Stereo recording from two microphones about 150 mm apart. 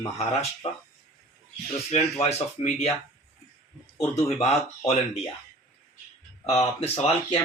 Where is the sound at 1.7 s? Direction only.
45° left (ahead or behind).